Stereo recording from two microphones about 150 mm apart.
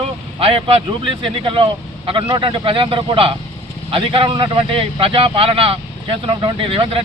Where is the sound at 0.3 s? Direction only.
40° right (ahead or behind).